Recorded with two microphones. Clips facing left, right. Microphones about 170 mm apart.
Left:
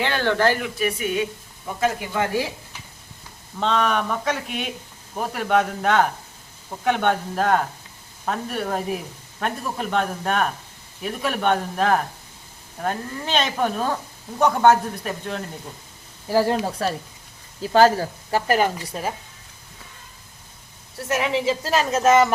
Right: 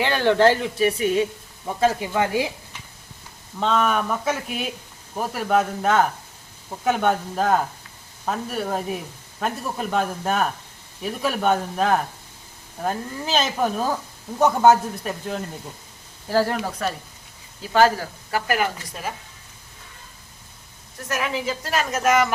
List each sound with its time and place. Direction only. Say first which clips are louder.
0.0 s speech: right 3 dB; 15° right (ahead or behind); by 1.3 s 30° right (ahead or behind)
2.1 s speech: right 1 dB; 15° right (ahead or behind)
3.6 s a woman's voice: even; 5° right (ahead or behind)
16.3 s speech: left 2 dB; 15° left (ahead or behind)
17.6 s speech: left 2 dB; 35° left (ahead or behind)
21.1 s speech: left 4 dB; 25° left (ahead or behind)